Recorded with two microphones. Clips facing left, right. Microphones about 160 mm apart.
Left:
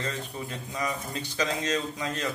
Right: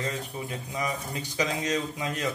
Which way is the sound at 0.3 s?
15° right (ahead or behind).